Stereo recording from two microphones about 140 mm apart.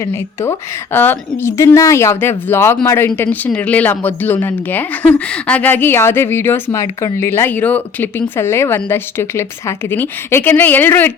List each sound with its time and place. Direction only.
0.0 s speech: 20° left (ahead or behind)